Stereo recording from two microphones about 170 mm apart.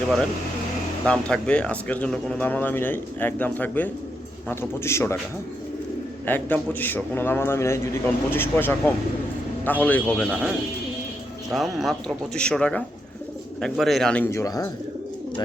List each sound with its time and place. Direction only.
1.0 s speech: 5° left (ahead or behind)
6.2 s speech: 10° left (ahead or behind)
10.2 s speech: 5° right (ahead or behind)
11.5 s speech: centre (ahead or behind); by 14.7 s 20° left (ahead or behind)